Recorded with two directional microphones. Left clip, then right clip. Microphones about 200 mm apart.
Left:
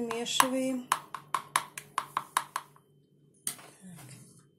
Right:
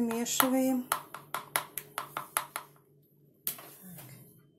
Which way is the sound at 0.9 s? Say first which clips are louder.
Left 4 dB; 5° left (ahead or behind).